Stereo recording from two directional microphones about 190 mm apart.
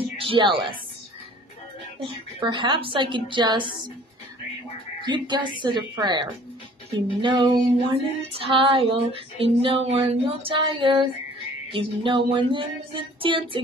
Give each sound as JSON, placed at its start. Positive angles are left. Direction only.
{"t": 0.2, "sound": "a woman's voice", "side_deg": -25}
{"t": 2.0, "sound": "female singing", "side_deg": -25}
{"t": 5.0, "sound": "female singing", "side_deg": -25}